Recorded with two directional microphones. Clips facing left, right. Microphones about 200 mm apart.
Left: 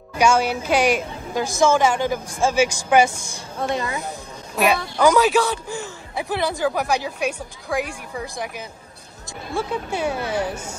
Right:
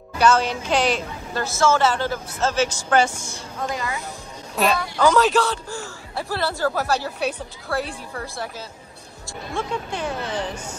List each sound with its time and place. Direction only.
0.2 s a woman's voice: 10° left (ahead or behind)
3.7 s speech: 25° left (ahead or behind)
4.6 s a woman's voice: 15° left (ahead or behind)